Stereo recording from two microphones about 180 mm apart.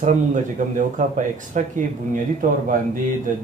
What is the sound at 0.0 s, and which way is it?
Speech, 45° right (ahead or behind).